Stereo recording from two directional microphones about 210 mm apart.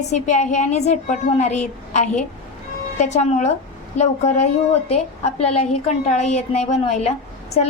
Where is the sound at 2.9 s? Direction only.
35° left (ahead or behind).